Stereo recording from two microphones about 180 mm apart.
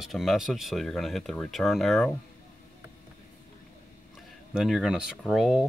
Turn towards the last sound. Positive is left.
turn(degrees=0)  # may be behind; listen again after turning